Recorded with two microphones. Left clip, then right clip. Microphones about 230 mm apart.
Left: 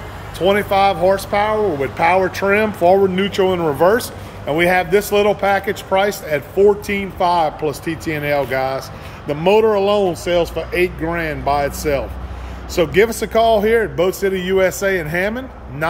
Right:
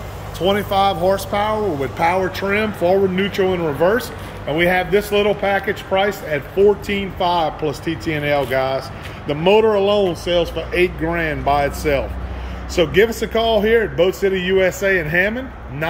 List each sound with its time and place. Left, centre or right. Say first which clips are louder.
0.4 s speech: left 2 dB; centre
14.6 s speech: left 3 dB; left